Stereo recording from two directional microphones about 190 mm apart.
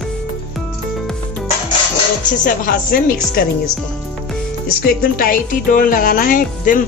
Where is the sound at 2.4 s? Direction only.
45° left (ahead or behind).